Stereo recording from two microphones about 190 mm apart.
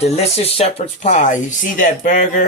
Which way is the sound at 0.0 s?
35° left (ahead or behind).